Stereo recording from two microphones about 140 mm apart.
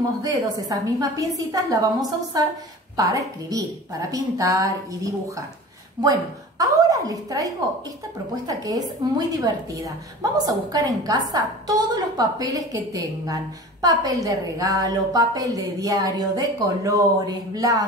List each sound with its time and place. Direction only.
0.2 s a woman's voice: 25° right (ahead or behind)
6.6 s a woman's voice: 25° right (ahead or behind)